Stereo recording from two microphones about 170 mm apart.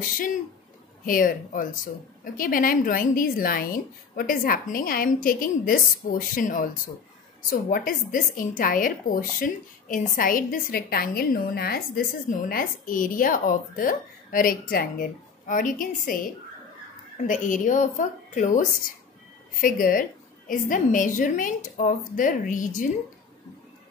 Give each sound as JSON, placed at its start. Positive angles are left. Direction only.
{"t": 0.0, "sound": "a woman's voice", "side_deg": 55}
{"t": 17.3, "sound": "a woman's voice", "side_deg": 50}